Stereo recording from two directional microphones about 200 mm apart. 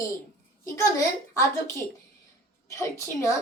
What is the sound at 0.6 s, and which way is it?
A child's voice, 15° left (ahead or behind).